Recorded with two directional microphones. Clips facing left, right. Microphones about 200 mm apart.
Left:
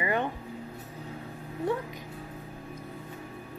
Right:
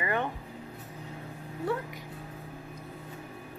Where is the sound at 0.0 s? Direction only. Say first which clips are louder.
Left 2 dB; 15° left (ahead or behind).